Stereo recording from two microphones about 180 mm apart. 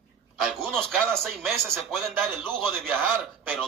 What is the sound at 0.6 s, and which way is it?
A man's voice, 5° left (ahead or behind).